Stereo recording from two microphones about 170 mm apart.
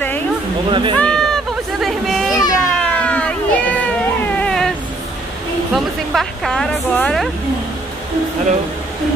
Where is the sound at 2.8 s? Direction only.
5° left (ahead or behind).